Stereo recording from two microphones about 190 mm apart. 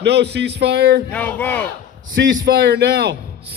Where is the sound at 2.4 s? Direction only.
60° right (ahead or behind).